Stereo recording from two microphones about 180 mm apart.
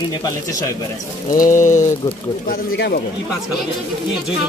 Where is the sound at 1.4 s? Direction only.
45° left (ahead or behind).